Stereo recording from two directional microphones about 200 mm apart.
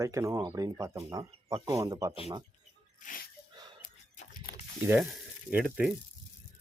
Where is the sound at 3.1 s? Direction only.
40° left (ahead or behind).